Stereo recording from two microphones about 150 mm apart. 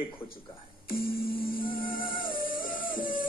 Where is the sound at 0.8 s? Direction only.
80° left.